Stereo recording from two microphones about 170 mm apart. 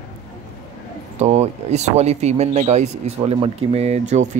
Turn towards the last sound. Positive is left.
turn(degrees=-45)  # may be behind; listen again after turning